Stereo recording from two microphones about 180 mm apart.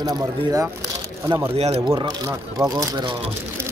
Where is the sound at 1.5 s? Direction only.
35° right (ahead or behind); by 3.1 s 20° right (ahead or behind).